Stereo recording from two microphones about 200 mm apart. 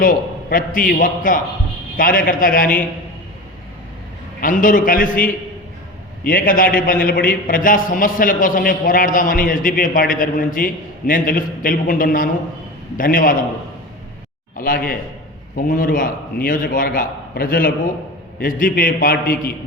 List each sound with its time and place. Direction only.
0.0 s a man's voice: 45° left (ahead or behind)
4.4 s a man's voice: 40° left (ahead or behind)
14.5 s a man's voice: 45° left (ahead or behind)